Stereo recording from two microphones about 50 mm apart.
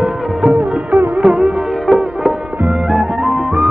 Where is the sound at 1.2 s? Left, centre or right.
Centre.